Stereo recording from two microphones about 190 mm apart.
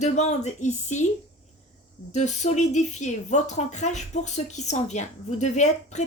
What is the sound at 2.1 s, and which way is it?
A woman's voice, 40° left (ahead or behind).